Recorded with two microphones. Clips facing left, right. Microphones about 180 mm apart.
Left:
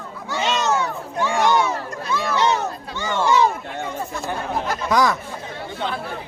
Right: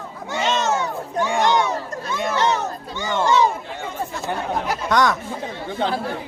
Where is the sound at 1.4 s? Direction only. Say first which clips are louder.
Left 1 dB; 5° left (ahead or behind).